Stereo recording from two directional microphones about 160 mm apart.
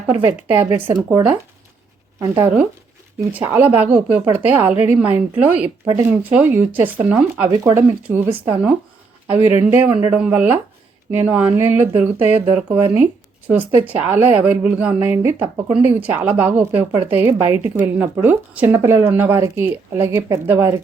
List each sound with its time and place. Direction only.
0.1 s a woman's voice: 15° right (ahead or behind)
3.2 s a woman's voice: 15° right (ahead or behind)
5.8 s speech: 25° right (ahead or behind)
6.1 s a woman's voice: 10° right (ahead or behind)
9.3 s a woman's voice: 15° right (ahead or behind)